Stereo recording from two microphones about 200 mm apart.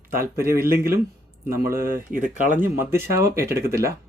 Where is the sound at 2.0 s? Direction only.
40° right (ahead or behind).